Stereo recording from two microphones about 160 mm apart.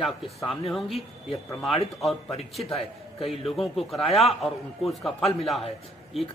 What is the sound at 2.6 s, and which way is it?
Speech, 35° left (ahead or behind).